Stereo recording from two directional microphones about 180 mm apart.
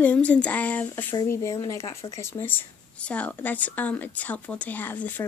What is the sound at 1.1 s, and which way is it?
Speech, 20° left (ahead or behind).